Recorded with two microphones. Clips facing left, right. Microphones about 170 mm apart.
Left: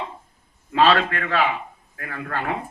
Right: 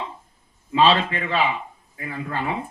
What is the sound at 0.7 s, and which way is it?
Speech, 55° left (ahead or behind).